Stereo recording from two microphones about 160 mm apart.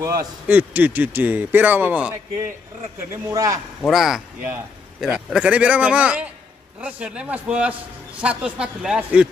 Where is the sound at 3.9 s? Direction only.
Centre (ahead or behind).